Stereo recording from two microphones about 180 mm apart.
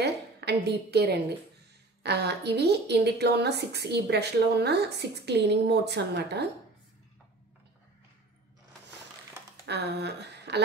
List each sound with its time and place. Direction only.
0.0 s a woman's voice: 70° right (ahead or behind)
9.7 s speech: 70° right (ahead or behind)